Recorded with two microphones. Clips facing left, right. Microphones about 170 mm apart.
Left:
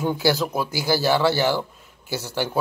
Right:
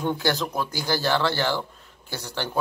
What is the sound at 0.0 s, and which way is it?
Speech, 5° left (ahead or behind).